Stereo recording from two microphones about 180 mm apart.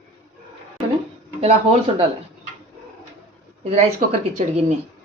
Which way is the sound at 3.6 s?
35° right (ahead or behind).